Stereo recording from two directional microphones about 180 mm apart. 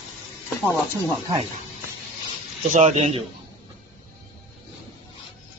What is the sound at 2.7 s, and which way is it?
Speech, 40° right (ahead or behind).